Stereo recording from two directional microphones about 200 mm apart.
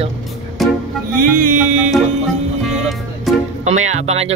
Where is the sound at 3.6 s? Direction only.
35° right (ahead or behind).